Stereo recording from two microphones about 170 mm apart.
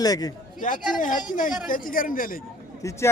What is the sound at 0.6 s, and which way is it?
Speech, 50° left (ahead or behind).